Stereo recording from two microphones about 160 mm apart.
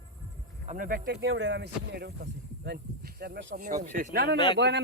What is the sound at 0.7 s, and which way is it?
Speech, 60° right (ahead or behind).